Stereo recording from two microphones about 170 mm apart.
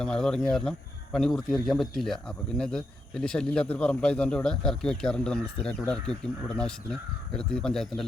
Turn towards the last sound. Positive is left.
turn(degrees=5)  # may be behind; listen again after turning